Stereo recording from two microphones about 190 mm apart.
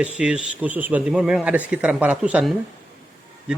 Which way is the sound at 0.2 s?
5° right (ahead or behind).